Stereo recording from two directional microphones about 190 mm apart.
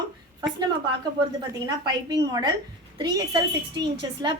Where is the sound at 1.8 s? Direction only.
20° right (ahead or behind).